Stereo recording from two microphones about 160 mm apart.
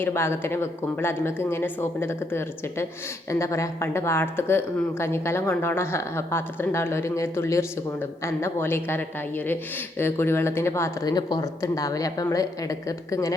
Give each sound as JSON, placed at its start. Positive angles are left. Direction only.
{"t": 0.0, "sound": "speech", "side_deg": 15}